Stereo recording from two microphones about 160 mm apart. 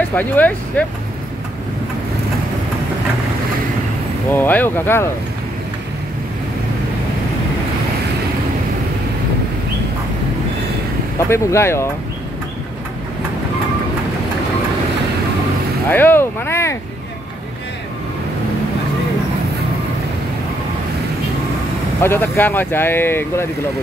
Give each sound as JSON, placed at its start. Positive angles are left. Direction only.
{"t": 0.1, "sound": "speech", "side_deg": 10}
{"t": 4.3, "sound": "speech", "side_deg": 10}
{"t": 11.1, "sound": "speech", "side_deg": 15}
{"t": 15.9, "sound": "speech", "side_deg": 15}
{"t": 22.0, "sound": "speech", "side_deg": 15}